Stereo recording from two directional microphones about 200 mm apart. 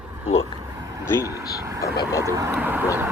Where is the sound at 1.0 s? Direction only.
10° left (ahead or behind).